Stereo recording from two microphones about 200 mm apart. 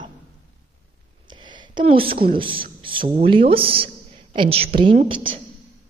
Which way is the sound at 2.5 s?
45° right (ahead or behind).